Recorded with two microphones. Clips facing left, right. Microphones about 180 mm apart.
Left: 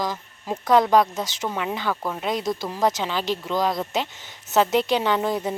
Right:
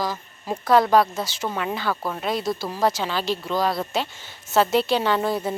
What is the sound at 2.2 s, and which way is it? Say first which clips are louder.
Speech: even; 15° left (ahead or behind).